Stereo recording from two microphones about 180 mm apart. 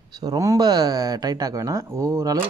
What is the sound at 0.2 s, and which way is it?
Speech, 20° right (ahead or behind).